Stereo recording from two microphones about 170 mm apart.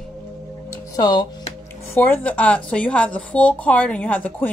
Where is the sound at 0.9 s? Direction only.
25° left (ahead or behind).